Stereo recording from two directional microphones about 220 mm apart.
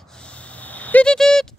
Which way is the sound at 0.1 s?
5° left (ahead or behind).